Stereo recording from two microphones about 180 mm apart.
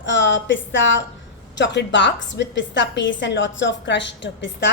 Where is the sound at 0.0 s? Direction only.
90° left.